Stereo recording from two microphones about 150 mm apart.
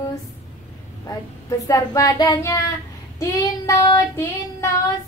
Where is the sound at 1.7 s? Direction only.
25° left (ahead or behind).